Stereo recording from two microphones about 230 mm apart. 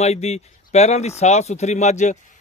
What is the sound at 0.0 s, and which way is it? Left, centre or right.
A man's voice, left.